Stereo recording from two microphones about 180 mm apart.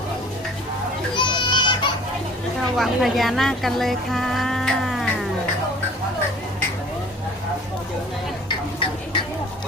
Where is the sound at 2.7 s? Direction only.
Centre (ahead or behind).